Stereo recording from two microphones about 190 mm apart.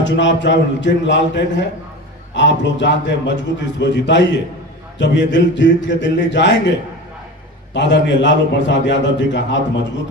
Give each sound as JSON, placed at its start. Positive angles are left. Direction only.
{"t": 0.0, "sound": "a man's voice", "side_deg": 75}